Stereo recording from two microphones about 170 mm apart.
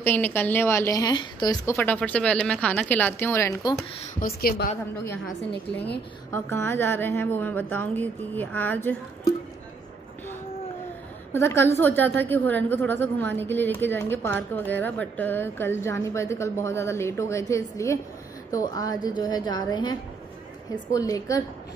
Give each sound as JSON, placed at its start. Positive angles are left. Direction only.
{"t": 0.0, "sound": "a woman's voice", "side_deg": 10}
{"t": 1.8, "sound": "a woman's voice", "side_deg": 10}
{"t": 4.2, "sound": "a woman's voice", "side_deg": 60}
{"t": 6.3, "sound": "a woman's voice", "side_deg": 15}
{"t": 11.3, "sound": "a woman's voice", "side_deg": 15}